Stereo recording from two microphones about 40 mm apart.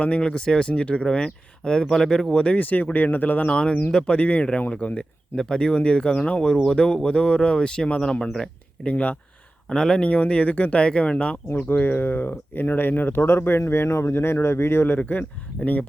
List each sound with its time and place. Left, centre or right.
0.0 s speech: left
2.6 s speech: left
3.5 s speech: left
4.2 s speech: left
4.9 s speech: left
9.6 s speech: centre
10.1 s speech: left
11.7 s speech: left
14.9 s speech: left